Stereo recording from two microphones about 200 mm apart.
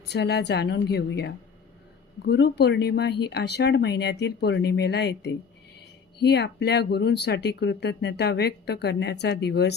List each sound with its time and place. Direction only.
0.1 s speech: 55° left (ahead or behind)